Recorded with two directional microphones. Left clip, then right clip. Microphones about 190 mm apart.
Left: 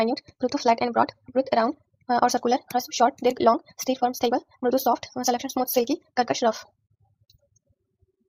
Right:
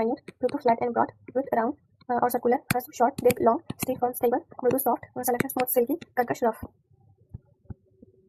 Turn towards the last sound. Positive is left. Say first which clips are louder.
# left 3 dB
turn(degrees=20)  # may be behind; listen again after turning